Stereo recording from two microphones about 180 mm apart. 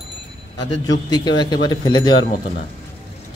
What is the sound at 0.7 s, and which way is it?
Speech, 25° left (ahead or behind).